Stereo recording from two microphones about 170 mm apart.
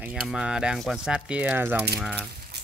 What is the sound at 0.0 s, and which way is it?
Speech, 5° right (ahead or behind).